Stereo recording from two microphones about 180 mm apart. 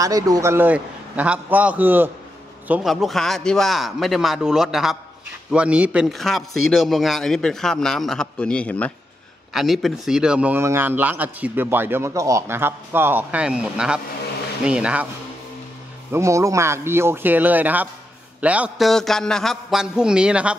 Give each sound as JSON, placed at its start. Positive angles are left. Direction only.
{"t": 0.0, "sound": "a man's voice", "side_deg": -20}
{"t": 16.1, "sound": "a man's voice", "side_deg": -15}